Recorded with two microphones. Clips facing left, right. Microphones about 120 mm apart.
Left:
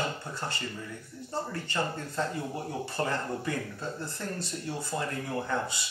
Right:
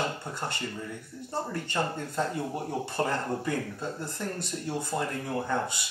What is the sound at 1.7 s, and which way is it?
Speech, 15° right (ahead or behind).